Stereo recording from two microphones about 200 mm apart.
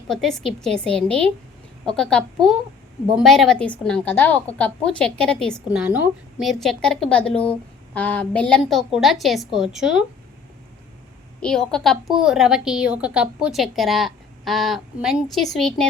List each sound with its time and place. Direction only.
0.1 s a woman's voice: centre (ahead or behind)
11.4 s a woman's voice: 5° left (ahead or behind)